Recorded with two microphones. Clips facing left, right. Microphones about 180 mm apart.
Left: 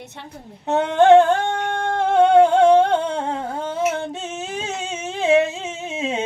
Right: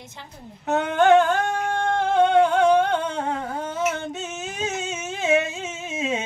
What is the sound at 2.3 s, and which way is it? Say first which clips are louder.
Humming: left 6 dB; 30° left (ahead or behind).